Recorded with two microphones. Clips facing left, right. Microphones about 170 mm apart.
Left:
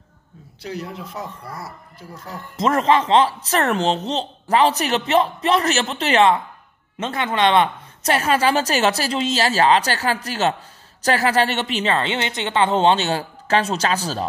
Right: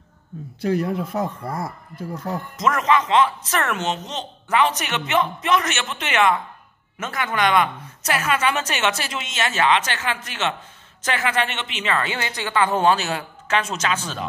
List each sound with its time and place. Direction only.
0.6 s speech: 50° right (ahead or behind)
2.5 s speech: 30° left (ahead or behind)